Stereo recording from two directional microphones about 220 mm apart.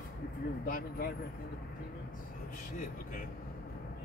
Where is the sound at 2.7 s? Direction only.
35° left (ahead or behind).